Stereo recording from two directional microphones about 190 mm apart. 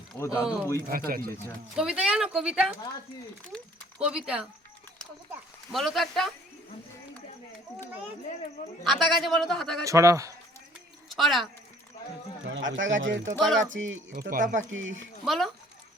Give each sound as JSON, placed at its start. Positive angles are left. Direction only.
{"t": 0.2, "sound": "speech", "side_deg": 15}
{"t": 0.9, "sound": "speech", "side_deg": -50}
{"t": 1.7, "sound": "a man's voice", "side_deg": -5}
{"t": 4.0, "sound": "a man's voice", "side_deg": -5}
{"t": 5.7, "sound": "a man's voice", "side_deg": 0}
{"t": 8.8, "sound": "a man's voice", "side_deg": 0}
{"t": 9.8, "sound": "a man's voice", "side_deg": -15}
{"t": 11.1, "sound": "speech", "side_deg": 0}
{"t": 12.5, "sound": "speech", "side_deg": -80}
{"t": 13.3, "sound": "a man's voice", "side_deg": 0}
{"t": 13.7, "sound": "speech", "side_deg": -90}
{"t": 14.1, "sound": "speech", "side_deg": -50}
{"t": 14.7, "sound": "speech", "side_deg": -90}
{"t": 15.2, "sound": "a man's voice", "side_deg": 0}